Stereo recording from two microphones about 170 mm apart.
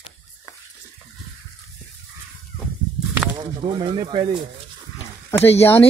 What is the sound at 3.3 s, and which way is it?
Speech, 30° right (ahead or behind).